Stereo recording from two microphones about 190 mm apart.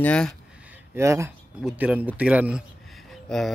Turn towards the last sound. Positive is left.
turn(degrees=0)  # may be behind; listen again after turning